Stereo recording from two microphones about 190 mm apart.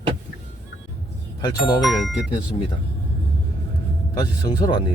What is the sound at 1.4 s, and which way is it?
Speech, 20° left (ahead or behind).